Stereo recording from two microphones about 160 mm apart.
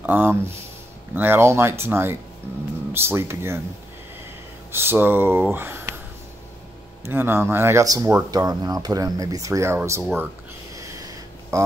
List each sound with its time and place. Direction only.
0.0 s speech: 10° right (ahead or behind)
4.7 s speech: 15° right (ahead or behind)
7.1 s speech: 15° right (ahead or behind)
10.7 s a sound: 20° right (ahead or behind)
11.5 s speech: 20° right (ahead or behind)